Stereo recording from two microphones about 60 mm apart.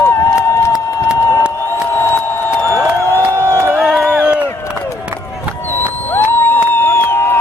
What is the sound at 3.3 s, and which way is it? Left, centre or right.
Crowd, right.